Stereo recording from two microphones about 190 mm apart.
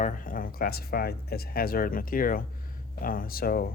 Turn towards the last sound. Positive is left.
turn(degrees=50)  # may be behind; listen again after turning